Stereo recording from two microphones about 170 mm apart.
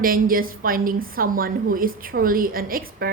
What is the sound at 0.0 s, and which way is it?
Speech, 55° right (ahead or behind).